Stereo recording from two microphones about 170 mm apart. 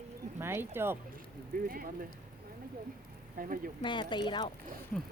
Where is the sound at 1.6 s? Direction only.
55° right (ahead or behind).